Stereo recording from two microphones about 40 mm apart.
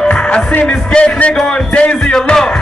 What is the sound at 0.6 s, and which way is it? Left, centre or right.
Music, left.